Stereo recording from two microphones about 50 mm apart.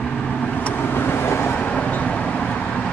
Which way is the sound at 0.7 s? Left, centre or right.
Left.